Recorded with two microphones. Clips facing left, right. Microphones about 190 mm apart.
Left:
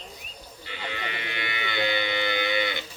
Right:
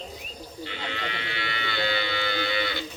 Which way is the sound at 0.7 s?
10° left (ahead or behind).